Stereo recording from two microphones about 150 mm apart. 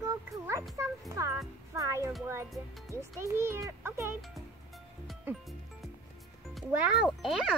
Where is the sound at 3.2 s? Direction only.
15° right (ahead or behind).